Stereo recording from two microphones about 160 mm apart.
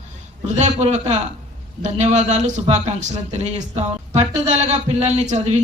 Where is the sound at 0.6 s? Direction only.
45° right (ahead or behind).